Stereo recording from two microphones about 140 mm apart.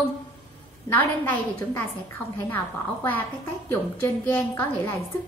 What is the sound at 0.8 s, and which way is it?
Speech, 10° left (ahead or behind).